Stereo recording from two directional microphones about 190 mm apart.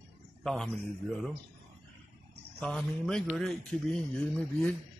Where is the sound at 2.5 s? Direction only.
5° left (ahead or behind).